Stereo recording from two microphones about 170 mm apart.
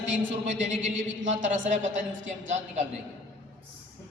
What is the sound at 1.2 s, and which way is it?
A woman's voice, 50° right (ahead or behind).